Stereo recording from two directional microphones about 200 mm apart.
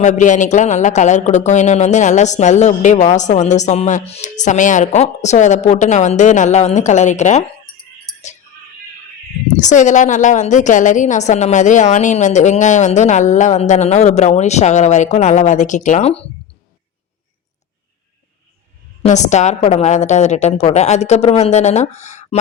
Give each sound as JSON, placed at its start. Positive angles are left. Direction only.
{"t": 0.0, "sound": "speech", "side_deg": 35}
{"t": 9.6, "sound": "speech", "side_deg": 40}
{"t": 19.0, "sound": "speech", "side_deg": 35}